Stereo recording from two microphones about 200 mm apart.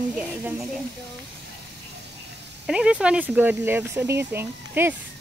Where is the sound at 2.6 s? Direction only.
5° right (ahead or behind).